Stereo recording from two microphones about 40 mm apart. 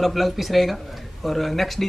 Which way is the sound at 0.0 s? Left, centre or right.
Centre.